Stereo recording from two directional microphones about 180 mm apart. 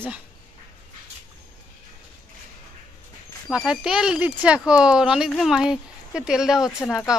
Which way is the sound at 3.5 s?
5° right (ahead or behind).